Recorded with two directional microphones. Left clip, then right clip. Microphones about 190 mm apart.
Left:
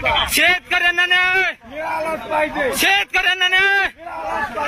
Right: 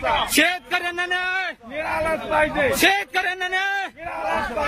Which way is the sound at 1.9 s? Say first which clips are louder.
Left 1 dB; 35° left (ahead or behind).